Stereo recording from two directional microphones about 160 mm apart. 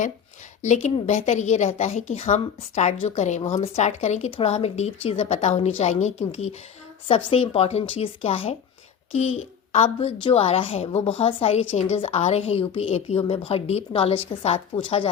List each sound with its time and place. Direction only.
0.6 s a woman's voice: 45° left (ahead or behind)